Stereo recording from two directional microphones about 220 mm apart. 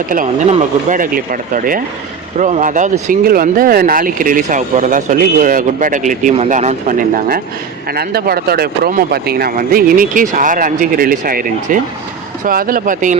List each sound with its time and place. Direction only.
0.5 s speech: 35° right (ahead or behind)